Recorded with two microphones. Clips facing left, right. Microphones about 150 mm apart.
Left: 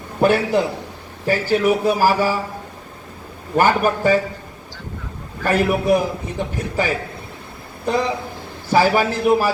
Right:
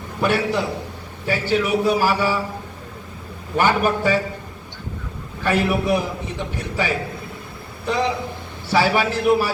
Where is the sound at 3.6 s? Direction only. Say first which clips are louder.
Left 2 dB; 40° left (ahead or behind).